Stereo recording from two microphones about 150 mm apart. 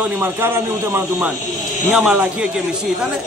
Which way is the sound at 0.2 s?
15° right (ahead or behind).